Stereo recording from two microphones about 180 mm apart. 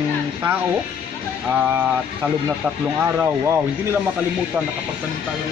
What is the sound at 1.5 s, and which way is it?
Speech, 10° right (ahead or behind).